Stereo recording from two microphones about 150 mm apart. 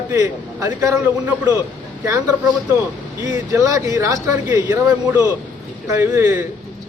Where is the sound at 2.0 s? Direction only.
20° right (ahead or behind).